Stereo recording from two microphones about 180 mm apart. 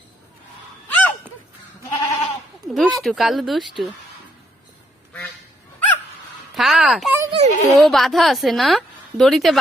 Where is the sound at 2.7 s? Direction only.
Centre (ahead or behind).